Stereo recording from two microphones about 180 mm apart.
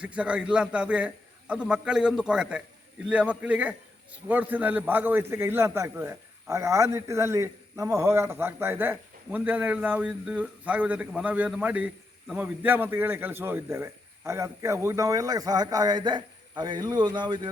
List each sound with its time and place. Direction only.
0.0 s a man's voice: 5° right (ahead or behind); by 17.5 s 25° right (ahead or behind)